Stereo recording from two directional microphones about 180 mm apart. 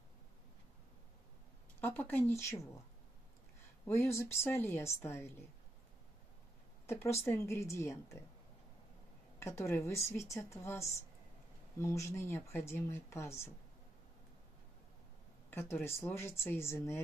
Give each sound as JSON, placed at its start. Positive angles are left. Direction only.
{"t": 1.8, "sound": "speech", "side_deg": 10}
{"t": 3.8, "sound": "speech", "side_deg": 15}
{"t": 6.9, "sound": "speech", "side_deg": 15}
{"t": 9.4, "sound": "speech", "side_deg": 15}
{"t": 16.0, "sound": "speech", "side_deg": 10}